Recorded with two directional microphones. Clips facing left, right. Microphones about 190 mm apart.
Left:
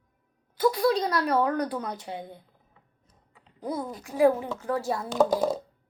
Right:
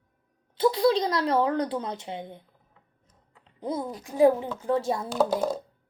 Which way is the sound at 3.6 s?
25° right (ahead or behind).